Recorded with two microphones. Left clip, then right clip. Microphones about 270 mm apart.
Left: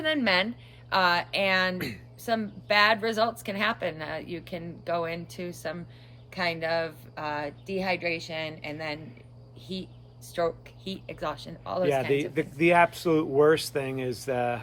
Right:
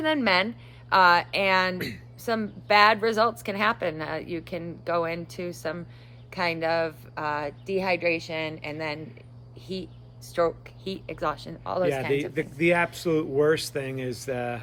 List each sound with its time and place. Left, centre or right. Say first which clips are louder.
0.0 s a woman's voice: right 2 dB; centre
12.3 s speech: left 2 dB; centre